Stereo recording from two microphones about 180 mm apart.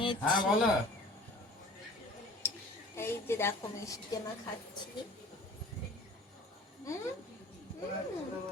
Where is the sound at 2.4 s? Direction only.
15° left (ahead or behind).